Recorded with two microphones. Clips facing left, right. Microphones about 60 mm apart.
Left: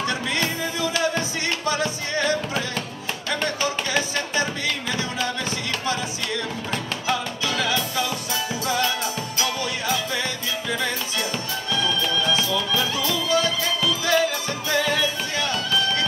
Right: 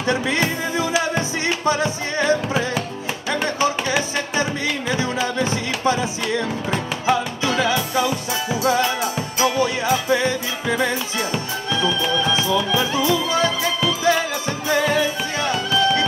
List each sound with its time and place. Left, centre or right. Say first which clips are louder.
0.0 s music: right 4 dB; right
4.4 s music: right 3 dB; right